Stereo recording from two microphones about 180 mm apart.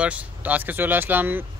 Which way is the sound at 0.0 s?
10° right (ahead or behind).